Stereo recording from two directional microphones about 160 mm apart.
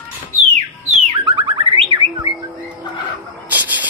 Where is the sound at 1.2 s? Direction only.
35° right (ahead or behind).